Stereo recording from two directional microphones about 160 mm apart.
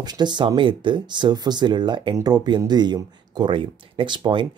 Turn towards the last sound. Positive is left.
turn(degrees=-30)  # may be behind; listen again after turning